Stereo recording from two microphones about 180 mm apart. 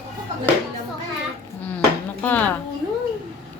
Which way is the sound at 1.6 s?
10° left (ahead or behind).